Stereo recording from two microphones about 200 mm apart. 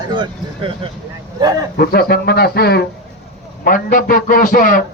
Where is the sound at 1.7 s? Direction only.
50° left (ahead or behind).